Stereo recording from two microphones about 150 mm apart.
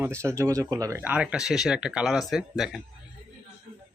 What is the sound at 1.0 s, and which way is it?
Speech, 10° right (ahead or behind).